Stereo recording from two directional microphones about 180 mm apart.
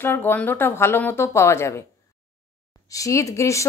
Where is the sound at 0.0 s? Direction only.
10° left (ahead or behind).